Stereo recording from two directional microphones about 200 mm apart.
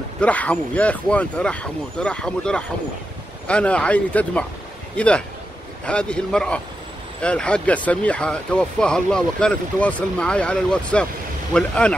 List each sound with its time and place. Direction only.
0.2 s speech: 5° left (ahead or behind)